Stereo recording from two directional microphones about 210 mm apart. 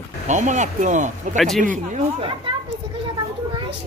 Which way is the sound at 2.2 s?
25° right (ahead or behind).